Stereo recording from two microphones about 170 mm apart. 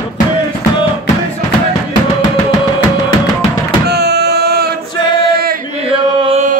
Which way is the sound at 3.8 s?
75° right (ahead or behind).